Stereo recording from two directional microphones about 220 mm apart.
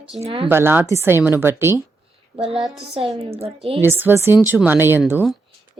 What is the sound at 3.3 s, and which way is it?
Speech, 25° right (ahead or behind).